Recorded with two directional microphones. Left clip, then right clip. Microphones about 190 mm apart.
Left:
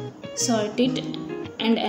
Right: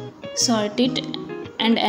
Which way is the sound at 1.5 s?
20° right (ahead or behind).